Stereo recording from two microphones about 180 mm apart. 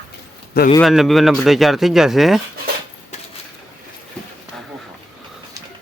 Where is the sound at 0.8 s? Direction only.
Centre (ahead or behind).